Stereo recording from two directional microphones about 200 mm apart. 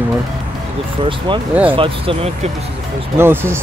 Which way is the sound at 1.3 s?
25° right (ahead or behind).